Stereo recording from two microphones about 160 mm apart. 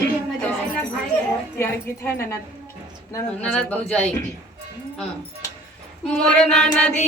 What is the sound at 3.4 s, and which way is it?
Singing, 5° left (ahead or behind).